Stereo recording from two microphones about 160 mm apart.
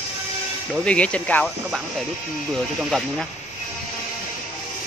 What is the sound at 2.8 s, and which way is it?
Speech, centre (ahead or behind).